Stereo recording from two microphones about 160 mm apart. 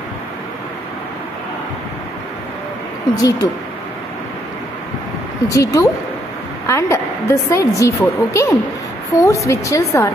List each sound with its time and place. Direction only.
3.2 s a woman's voice: 25° left (ahead or behind)
5.5 s a woman's voice: 20° left (ahead or behind)